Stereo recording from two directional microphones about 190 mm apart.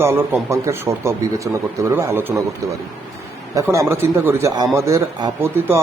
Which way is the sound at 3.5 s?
15° right (ahead or behind).